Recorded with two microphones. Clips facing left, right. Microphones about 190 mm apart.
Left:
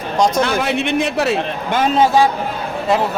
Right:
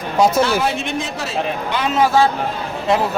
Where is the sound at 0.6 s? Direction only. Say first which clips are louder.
Left 4 dB; 65° left (ahead or behind).